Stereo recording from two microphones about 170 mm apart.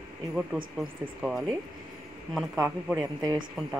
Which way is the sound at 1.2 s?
5° right (ahead or behind).